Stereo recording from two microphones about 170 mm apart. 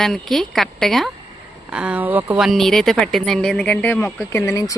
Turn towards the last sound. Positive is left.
turn(degrees=20)  # may be behind; listen again after turning